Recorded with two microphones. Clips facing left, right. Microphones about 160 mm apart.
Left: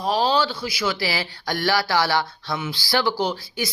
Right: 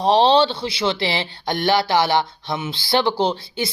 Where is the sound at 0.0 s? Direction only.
30° right (ahead or behind).